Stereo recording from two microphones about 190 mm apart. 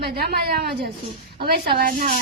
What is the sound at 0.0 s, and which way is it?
A woman's voice, 55° right (ahead or behind).